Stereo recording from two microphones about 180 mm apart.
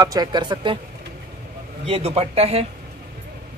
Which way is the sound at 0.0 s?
20° right (ahead or behind).